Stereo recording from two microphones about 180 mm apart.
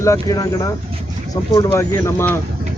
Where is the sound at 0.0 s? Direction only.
20° left (ahead or behind).